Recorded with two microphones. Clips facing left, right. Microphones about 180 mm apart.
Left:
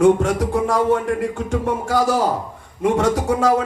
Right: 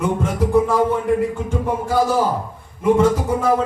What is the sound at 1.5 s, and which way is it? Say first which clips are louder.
A man's voice: left 1 dB; 80° left.